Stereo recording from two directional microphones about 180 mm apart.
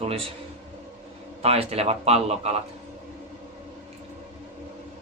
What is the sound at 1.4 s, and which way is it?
Speech, 35° right (ahead or behind).